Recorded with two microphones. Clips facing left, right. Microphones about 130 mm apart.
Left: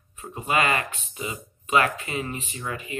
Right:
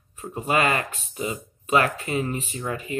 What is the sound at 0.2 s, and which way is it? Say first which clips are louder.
Speech: right 2 dB; 40° right (ahead or behind).